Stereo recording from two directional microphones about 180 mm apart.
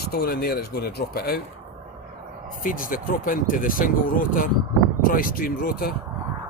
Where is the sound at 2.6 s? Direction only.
50° left (ahead or behind).